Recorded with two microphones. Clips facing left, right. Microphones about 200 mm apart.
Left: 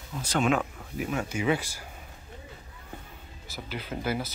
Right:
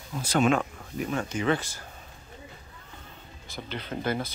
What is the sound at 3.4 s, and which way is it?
Speech, 5° left (ahead or behind).